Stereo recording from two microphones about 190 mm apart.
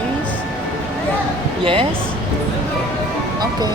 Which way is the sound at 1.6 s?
30° right (ahead or behind).